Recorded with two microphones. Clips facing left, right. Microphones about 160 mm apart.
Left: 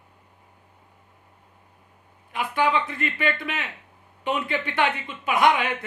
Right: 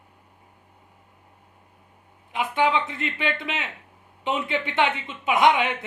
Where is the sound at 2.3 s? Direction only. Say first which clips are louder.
Right 1 dB; 20° right (ahead or behind).